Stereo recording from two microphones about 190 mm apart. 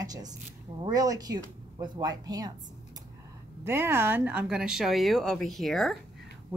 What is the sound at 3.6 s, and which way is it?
Speech, 10° right (ahead or behind).